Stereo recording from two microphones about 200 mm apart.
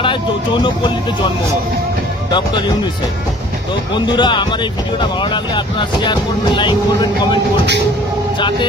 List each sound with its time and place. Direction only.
0.0 s speech: 25° left (ahead or behind)
3.9 s speech: 25° left (ahead or behind)
8.4 s speech: 25° left (ahead or behind)